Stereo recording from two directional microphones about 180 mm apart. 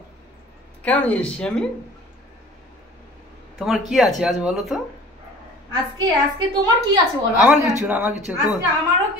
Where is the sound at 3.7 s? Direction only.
Centre (ahead or behind).